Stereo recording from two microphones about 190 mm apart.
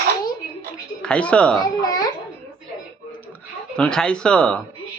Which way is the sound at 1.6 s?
20° left (ahead or behind).